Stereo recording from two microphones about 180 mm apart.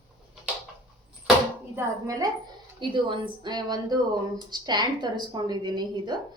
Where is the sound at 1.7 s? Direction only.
20° right (ahead or behind).